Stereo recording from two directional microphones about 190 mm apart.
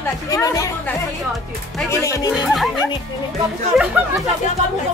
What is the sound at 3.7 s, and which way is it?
Speech, centre (ahead or behind).